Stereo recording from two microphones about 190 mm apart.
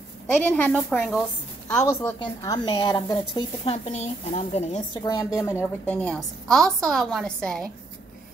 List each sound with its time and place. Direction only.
0.4 s a woman's voice: 10° left (ahead or behind)
1.7 s a woman's voice: 10° left (ahead or behind)
2.1 s speech: 20° left (ahead or behind)
4.9 s speech: 25° left (ahead or behind)
5.4 s a woman's voice: 10° left (ahead or behind)